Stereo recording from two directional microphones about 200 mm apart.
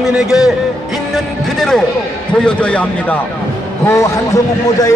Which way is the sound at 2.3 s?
5° left (ahead or behind).